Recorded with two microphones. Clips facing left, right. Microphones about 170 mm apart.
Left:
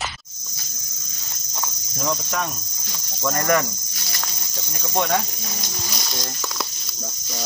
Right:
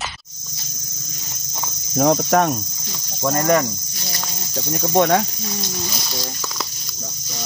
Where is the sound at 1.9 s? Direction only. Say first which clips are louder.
Right 10 dB; 60° right (ahead or behind).